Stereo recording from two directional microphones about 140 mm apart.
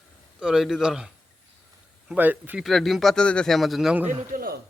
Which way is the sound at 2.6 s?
Centre (ahead or behind).